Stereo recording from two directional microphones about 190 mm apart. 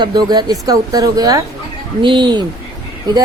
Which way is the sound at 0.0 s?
20° right (ahead or behind).